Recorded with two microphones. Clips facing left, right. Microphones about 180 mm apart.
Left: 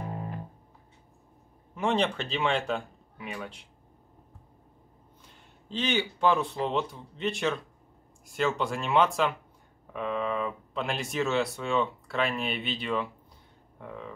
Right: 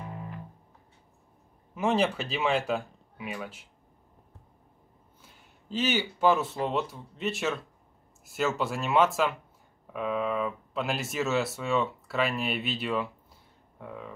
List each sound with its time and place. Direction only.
0.0 s music: 40° left (ahead or behind)
1.8 s speech: 5° right (ahead or behind)
5.2 s speech: 5° right (ahead or behind)